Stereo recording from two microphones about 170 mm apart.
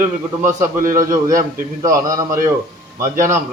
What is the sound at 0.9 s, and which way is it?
A man's voice, 20° right (ahead or behind).